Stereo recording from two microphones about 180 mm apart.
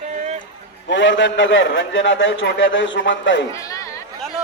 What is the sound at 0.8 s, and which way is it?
A man's voice, 85° left.